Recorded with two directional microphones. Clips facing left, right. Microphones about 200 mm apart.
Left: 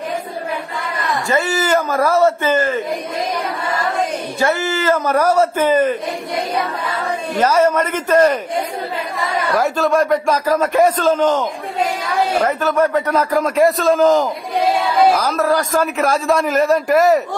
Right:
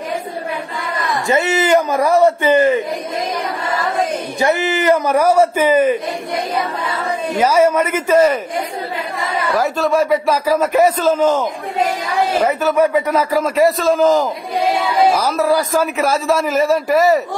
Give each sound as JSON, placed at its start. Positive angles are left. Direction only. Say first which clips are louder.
{"t": 1.3, "sound": "a man's voice", "louder": "right 3 dB", "side_deg": -20}
{"t": 4.4, "sound": "a man's voice", "louder": "right 2 dB", "side_deg": -20}
{"t": 7.3, "sound": "a man's voice", "louder": "right 1 dB", "side_deg": -10}
{"t": 9.5, "sound": "a man's voice", "louder": "even", "side_deg": 0}
{"t": 12.4, "sound": "a man's voice", "louder": "right 2 dB", "side_deg": -10}